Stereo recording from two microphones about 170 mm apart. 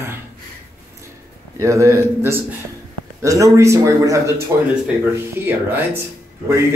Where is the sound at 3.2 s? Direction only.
20° right (ahead or behind).